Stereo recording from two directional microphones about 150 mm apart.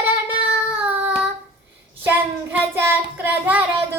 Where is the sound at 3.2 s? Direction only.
10° right (ahead or behind).